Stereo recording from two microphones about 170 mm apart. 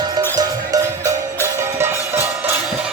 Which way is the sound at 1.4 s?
15° right (ahead or behind).